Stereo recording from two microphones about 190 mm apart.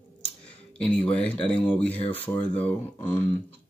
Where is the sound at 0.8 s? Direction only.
5° left (ahead or behind).